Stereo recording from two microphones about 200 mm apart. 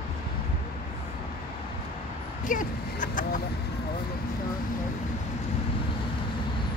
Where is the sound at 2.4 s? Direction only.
40° left (ahead or behind).